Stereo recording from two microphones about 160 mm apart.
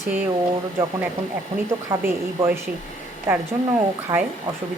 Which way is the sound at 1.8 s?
15° right (ahead or behind).